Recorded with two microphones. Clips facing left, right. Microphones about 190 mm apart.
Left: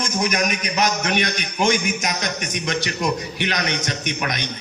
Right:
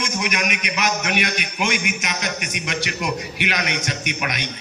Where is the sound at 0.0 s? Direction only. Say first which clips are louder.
Left 3 dB; 40° left (ahead or behind).